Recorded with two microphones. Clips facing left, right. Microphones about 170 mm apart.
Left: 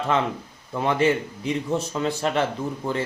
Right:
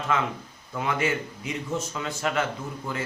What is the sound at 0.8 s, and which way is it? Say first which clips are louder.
A man's voice: left 6 dB; 30° left (ahead or behind).